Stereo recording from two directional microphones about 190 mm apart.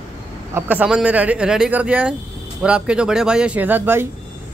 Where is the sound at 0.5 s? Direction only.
10° right (ahead or behind).